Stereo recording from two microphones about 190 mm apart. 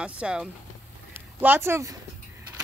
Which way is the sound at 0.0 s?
5° right (ahead or behind).